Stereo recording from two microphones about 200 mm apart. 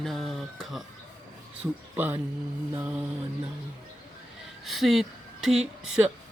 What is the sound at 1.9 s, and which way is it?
Speech, 10° right (ahead or behind).